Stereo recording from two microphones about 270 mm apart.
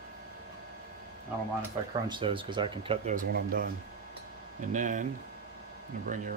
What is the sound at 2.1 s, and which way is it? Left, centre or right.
Speech, centre.